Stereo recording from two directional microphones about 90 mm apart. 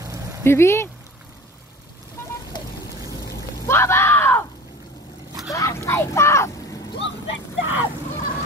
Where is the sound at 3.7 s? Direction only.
30° left (ahead or behind).